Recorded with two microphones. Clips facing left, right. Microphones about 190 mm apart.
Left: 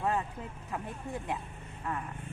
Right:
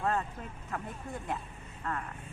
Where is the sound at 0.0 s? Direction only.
15° left (ahead or behind).